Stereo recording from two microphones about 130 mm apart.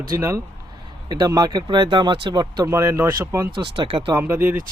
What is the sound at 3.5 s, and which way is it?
Speech, 40° right (ahead or behind).